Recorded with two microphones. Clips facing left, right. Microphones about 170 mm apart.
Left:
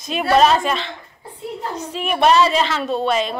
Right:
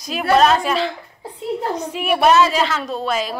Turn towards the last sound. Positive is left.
turn(degrees=-5)  # may be behind; listen again after turning